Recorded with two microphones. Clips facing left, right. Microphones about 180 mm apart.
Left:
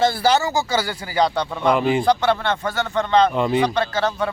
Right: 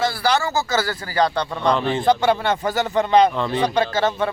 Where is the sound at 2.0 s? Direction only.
10° right (ahead or behind).